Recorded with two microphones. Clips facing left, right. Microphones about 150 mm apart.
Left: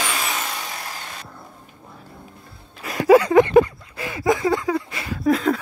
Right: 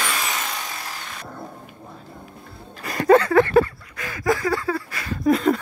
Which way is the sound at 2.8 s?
5° left (ahead or behind).